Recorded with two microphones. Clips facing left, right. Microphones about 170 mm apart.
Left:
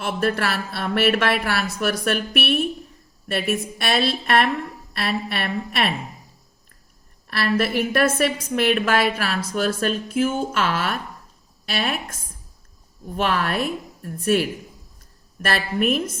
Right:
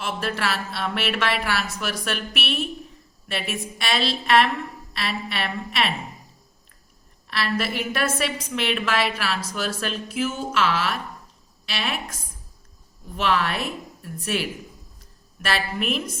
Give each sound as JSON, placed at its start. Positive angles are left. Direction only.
{"t": 0.0, "sound": "a woman's voice", "side_deg": 55}
{"t": 7.3, "sound": "a woman's voice", "side_deg": 55}
{"t": 13.1, "sound": "a woman's voice", "side_deg": 50}